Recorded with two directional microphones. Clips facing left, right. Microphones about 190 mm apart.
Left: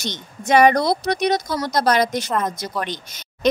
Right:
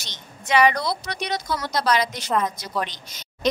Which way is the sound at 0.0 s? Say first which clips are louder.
Left 12 dB; 45° left (ahead or behind).